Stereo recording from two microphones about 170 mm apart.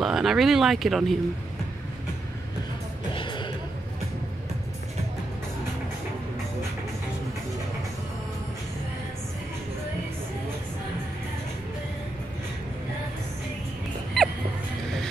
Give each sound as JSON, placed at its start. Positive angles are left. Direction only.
{"t": 0.0, "sound": "speech", "side_deg": 0}
{"t": 3.2, "sound": "music", "side_deg": 30}
{"t": 14.2, "sound": "music", "side_deg": 0}